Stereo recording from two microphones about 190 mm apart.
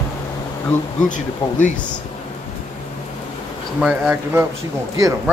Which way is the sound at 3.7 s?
5° right (ahead or behind).